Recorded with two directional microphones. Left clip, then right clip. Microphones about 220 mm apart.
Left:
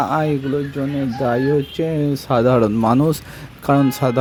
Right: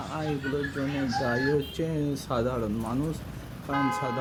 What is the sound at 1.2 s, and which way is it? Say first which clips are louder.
Speech: left 10 dB; 35° left (ahead or behind).